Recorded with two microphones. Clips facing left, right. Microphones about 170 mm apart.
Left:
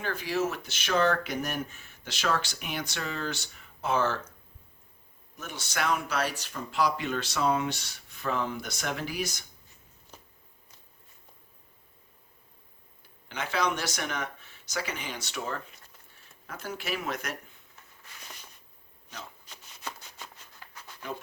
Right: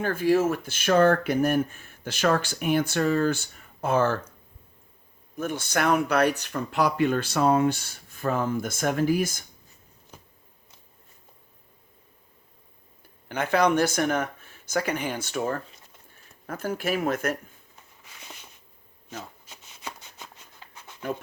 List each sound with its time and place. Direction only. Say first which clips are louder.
0.0 s speech: right 8 dB; 50° right (ahead or behind)
5.4 s speech: right 7 dB; 55° right (ahead or behind)
13.2 s speech: right 7 dB; 55° right (ahead or behind)